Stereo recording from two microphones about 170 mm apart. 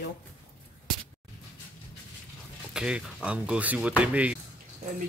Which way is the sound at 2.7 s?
5° right (ahead or behind).